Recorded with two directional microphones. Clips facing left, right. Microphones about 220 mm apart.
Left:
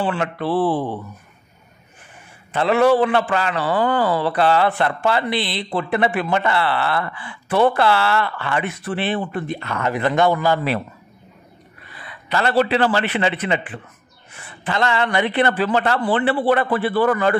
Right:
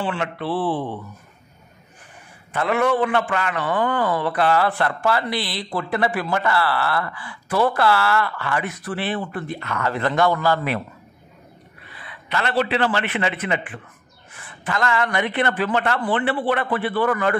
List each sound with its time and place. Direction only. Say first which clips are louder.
0.0 s a man's voice: left 3 dB; 40° left (ahead or behind)
2.5 s a man's voice: left 5 dB; 30° left (ahead or behind)
12.3 s a man's voice: left 4 dB; 35° left (ahead or behind)